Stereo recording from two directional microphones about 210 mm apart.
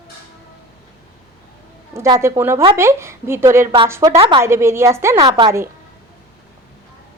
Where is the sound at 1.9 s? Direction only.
15° right (ahead or behind).